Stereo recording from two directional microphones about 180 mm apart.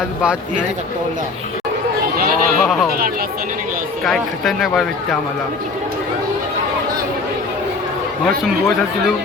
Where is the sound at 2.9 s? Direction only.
55° right (ahead or behind).